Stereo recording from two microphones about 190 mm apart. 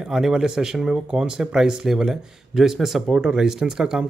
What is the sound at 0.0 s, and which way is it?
Speech, 5° right (ahead or behind).